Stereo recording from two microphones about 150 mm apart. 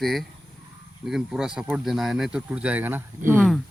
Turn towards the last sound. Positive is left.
turn(degrees=-15)  # may be behind; listen again after turning